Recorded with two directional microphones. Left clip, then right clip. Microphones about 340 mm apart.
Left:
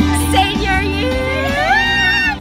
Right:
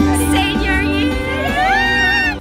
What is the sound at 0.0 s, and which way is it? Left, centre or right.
Music, centre.